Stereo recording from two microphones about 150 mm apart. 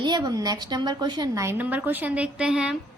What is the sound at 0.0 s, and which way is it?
A woman's voice, 30° right (ahead or behind).